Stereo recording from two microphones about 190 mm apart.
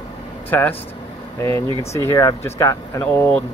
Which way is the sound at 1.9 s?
15° left (ahead or behind).